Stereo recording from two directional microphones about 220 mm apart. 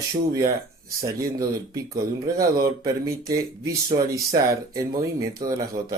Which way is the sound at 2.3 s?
15° right (ahead or behind).